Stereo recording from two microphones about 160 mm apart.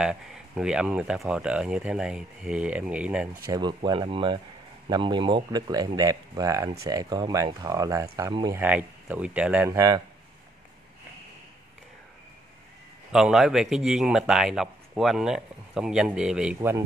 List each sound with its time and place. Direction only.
0.0 s a man's voice: 5° right (ahead or behind)
3.4 s speech: 25° right (ahead or behind)
8.5 s speech: 10° right (ahead or behind)
9.7 s speech: 20° right (ahead or behind)
13.1 s a man's voice: 5° right (ahead or behind)